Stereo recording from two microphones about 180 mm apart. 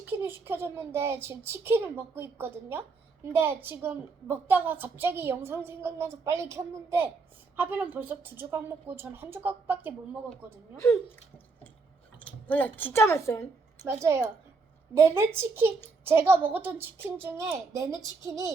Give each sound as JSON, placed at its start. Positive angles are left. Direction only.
{"t": 0.1, "sound": "a woman's voice", "side_deg": -10}
{"t": 12.2, "sound": "a woman's voice", "side_deg": 10}
{"t": 13.8, "sound": "a woman's voice", "side_deg": -15}